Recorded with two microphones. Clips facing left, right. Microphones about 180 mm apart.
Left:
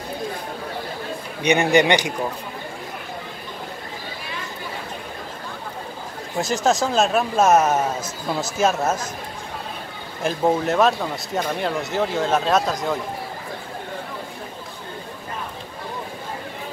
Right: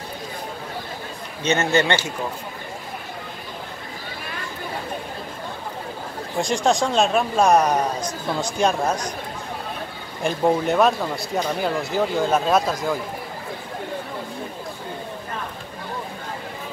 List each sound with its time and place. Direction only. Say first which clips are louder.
1.4 s a man's voice: left 3 dB; 15° left (ahead or behind)
6.3 s speech: even; centre (ahead or behind)
10.2 s speech: even; centre (ahead or behind)